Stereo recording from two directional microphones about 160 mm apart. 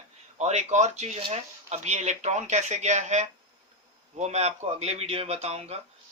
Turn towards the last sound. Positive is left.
turn(degrees=-40)  # may be behind; listen again after turning